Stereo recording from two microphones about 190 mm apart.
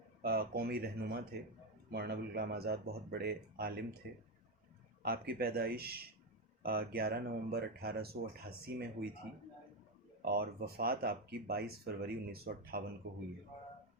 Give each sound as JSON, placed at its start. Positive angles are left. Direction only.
{"t": 0.2, "sound": "speech", "side_deg": -55}
{"t": 10.2, "sound": "speech", "side_deg": -55}